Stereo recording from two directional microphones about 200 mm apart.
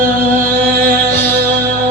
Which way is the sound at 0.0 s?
40° right (ahead or behind).